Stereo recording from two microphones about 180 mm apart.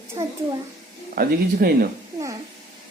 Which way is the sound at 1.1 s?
55° right (ahead or behind).